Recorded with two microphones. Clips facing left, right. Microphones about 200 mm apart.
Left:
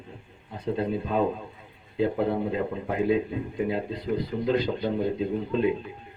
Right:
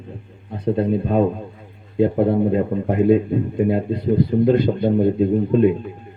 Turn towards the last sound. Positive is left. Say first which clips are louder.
# right 10 dB
turn(degrees=-55)  # may be behind; listen again after turning